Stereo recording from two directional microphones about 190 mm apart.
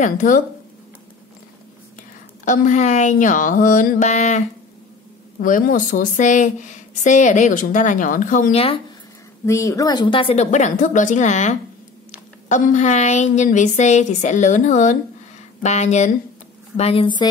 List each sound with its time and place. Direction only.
0.0 s speech: 40° left (ahead or behind)
2.4 s a woman's voice: 40° left (ahead or behind)
5.4 s a woman's voice: 45° left (ahead or behind)
9.5 s a woman's voice: 15° left (ahead or behind)